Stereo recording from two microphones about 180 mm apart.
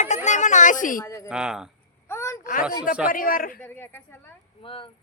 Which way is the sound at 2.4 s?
45° left (ahead or behind).